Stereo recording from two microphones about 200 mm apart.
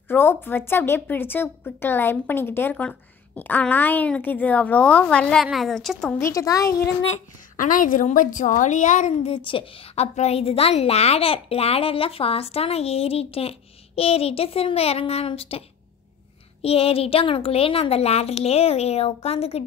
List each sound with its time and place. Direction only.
0.1 s a woman's voice: 10° left (ahead or behind)
6.2 s a woman's voice: 15° left (ahead or behind)
7.5 s a woman's voice: 40° left (ahead or behind)
16.6 s a woman's voice: 30° left (ahead or behind)